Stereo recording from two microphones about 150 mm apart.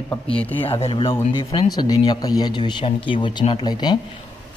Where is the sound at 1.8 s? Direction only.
25° left (ahead or behind).